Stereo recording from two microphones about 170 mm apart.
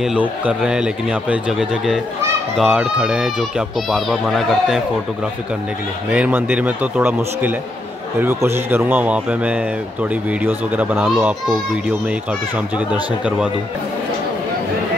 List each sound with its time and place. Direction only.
0.0 s speech: 5° right (ahead or behind)
6.1 s speech: 10° right (ahead or behind)